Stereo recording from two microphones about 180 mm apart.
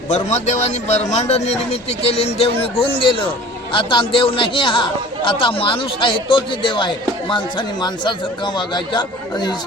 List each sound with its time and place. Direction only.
0.1 s a man's voice: 40° left (ahead or behind); by 9.6 s 25° left (ahead or behind)